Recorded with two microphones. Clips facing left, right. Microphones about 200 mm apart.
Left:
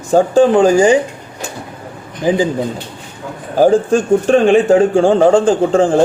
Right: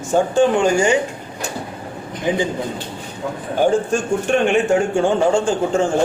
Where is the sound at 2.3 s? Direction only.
35° left (ahead or behind).